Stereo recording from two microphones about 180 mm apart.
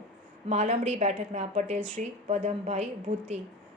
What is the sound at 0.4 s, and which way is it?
A woman's voice, 35° right (ahead or behind).